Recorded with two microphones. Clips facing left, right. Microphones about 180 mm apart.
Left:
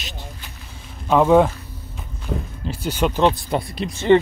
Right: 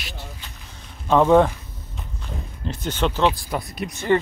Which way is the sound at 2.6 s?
10° left (ahead or behind).